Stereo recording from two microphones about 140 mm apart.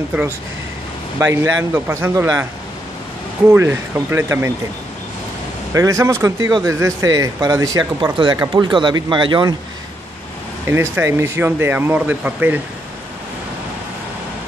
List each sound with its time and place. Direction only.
1.2 s speech: 20° right (ahead or behind)
3.4 s speech: 20° right (ahead or behind)
5.7 s speech: 25° right (ahead or behind)
10.7 s speech: 15° right (ahead or behind)